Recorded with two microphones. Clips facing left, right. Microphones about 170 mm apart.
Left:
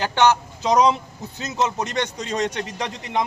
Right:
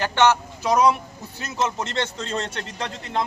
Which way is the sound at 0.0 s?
15° left (ahead or behind).